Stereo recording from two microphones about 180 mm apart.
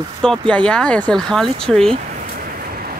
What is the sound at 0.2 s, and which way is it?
Speech, 5° left (ahead or behind).